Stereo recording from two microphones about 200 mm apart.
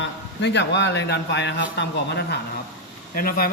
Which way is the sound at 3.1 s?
45° left (ahead or behind).